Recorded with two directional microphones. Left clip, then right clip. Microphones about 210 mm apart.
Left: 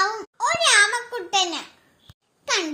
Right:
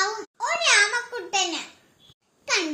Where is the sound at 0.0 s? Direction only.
45° left (ahead or behind).